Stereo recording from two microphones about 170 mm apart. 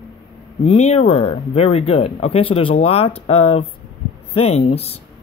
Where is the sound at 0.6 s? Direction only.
40° left (ahead or behind).